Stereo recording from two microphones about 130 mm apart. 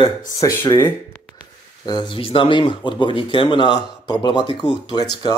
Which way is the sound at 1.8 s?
35° left (ahead or behind).